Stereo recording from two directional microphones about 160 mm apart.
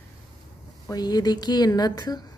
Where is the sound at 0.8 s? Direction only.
25° left (ahead or behind).